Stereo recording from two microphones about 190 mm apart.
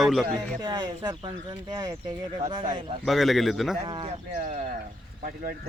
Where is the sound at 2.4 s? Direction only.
30° right (ahead or behind).